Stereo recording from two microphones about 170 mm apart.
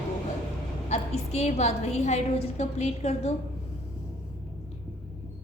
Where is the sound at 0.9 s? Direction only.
40° left (ahead or behind).